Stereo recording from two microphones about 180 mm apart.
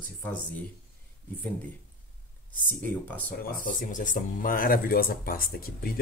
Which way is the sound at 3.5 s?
50° left (ahead or behind).